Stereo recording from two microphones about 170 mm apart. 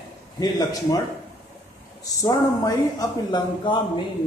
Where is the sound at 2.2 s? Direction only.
25° left (ahead or behind).